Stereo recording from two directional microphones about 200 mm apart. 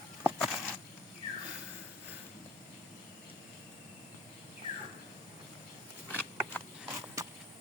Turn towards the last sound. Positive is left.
turn(degrees=-15)  # may be behind; listen again after turning